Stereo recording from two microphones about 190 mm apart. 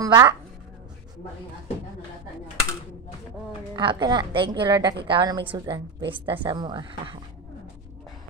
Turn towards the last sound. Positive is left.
turn(degrees=-25)  # may be behind; listen again after turning